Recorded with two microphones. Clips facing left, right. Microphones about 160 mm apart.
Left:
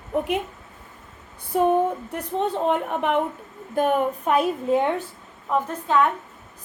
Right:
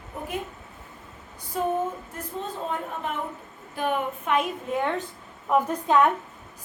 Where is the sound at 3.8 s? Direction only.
45° left (ahead or behind).